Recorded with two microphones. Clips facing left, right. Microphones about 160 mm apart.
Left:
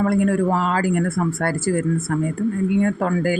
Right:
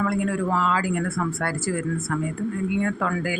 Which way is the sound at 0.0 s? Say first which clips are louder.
Left 6 dB; 50° left (ahead or behind).